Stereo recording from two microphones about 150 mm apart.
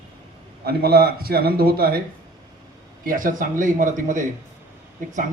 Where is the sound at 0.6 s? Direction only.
90° right.